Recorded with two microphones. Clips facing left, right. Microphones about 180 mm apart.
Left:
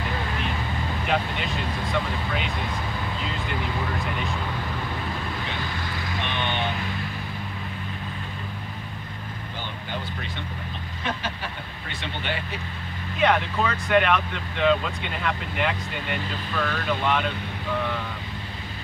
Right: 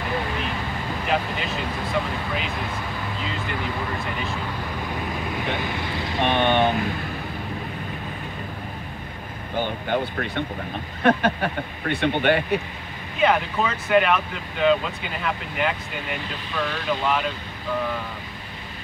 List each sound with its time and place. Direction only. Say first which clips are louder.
1.0 s speech: right 1 dB; centre (ahead or behind)
6.2 s speech: right 10 dB; 50° right (ahead or behind)
9.6 s speech: right 11 dB; 55° right (ahead or behind)
13.2 s speech: right 1 dB; centre (ahead or behind)